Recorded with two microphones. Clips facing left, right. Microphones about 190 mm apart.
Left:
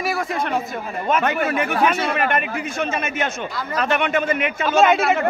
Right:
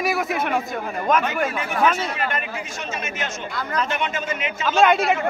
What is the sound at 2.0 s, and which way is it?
A man's voice, 60° left (ahead or behind).